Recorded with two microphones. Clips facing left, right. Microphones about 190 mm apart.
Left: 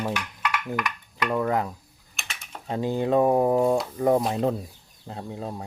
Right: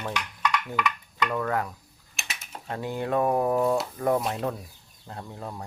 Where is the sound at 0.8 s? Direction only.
15° left (ahead or behind).